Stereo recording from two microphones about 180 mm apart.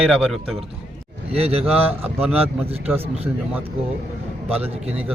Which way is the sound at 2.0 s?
10° right (ahead or behind).